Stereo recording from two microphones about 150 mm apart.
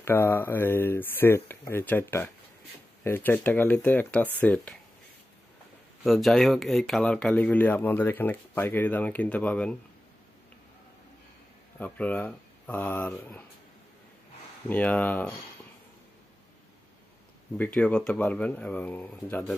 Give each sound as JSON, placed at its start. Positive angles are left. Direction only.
{"t": 0.0, "sound": "speech", "side_deg": 15}
{"t": 6.0, "sound": "speech", "side_deg": 0}
{"t": 11.8, "sound": "speech", "side_deg": 10}
{"t": 14.7, "sound": "speech", "side_deg": 10}
{"t": 17.6, "sound": "speech", "side_deg": 10}